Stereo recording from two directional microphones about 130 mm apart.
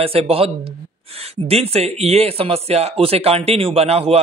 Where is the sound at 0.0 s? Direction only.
45° right (ahead or behind).